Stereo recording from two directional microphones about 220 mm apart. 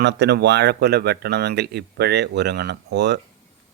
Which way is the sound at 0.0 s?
50° right (ahead or behind).